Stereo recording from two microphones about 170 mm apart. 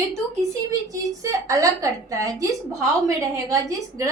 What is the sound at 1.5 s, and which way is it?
A woman's voice, 20° right (ahead or behind).